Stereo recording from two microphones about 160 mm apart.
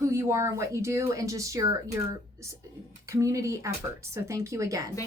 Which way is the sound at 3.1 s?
20° right (ahead or behind).